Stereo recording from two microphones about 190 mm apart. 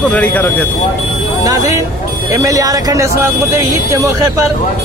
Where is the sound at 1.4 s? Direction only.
15° right (ahead or behind).